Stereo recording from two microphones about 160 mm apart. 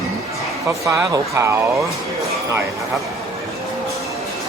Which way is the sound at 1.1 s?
20° right (ahead or behind).